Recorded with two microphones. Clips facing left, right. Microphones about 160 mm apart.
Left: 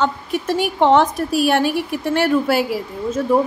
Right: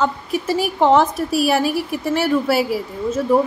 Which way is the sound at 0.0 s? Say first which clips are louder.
Even; 5° right (ahead or behind).